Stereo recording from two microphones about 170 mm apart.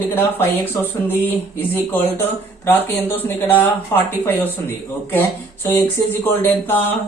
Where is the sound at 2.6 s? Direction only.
15° left (ahead or behind).